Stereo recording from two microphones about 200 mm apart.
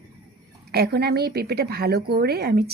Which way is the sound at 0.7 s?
50° right (ahead or behind).